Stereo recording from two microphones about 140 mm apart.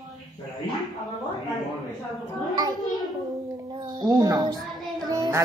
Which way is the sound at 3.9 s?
30° right (ahead or behind).